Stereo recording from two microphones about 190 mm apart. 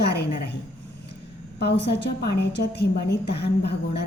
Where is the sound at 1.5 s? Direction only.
60° left (ahead or behind).